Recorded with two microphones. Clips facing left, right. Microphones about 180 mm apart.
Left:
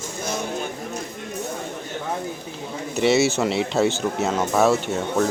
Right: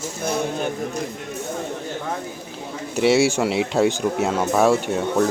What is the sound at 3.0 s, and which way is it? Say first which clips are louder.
Speech: right 1 dB; 10° right (ahead or behind).